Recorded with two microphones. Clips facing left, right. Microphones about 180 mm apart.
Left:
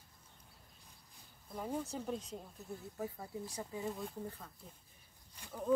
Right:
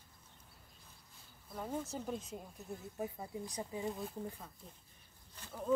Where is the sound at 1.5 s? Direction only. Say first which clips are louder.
Left 1 dB; 10° left (ahead or behind).